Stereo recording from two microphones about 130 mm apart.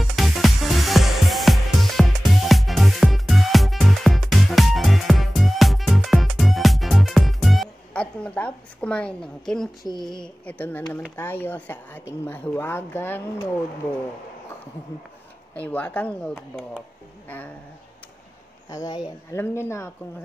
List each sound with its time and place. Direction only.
0.0 s music: centre (ahead or behind)
9.9 s speech: 5° left (ahead or behind)
15.5 s speech: 10° left (ahead or behind)
18.7 s speech: 25° left (ahead or behind)